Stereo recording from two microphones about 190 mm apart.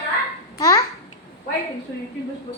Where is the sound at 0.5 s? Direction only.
15° left (ahead or behind).